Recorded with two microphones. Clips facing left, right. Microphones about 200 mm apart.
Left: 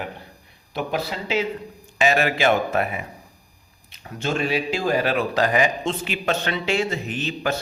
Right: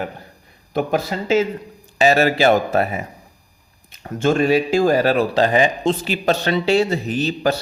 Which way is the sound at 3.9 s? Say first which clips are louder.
Right 8 dB; 50° right (ahead or behind).